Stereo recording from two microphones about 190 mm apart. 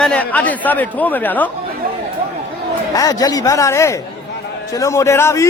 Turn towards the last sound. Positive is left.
turn(degrees=15)  # may be behind; listen again after turning